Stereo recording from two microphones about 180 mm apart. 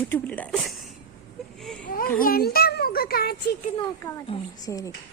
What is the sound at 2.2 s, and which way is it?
A child's voice, 55° left (ahead or behind).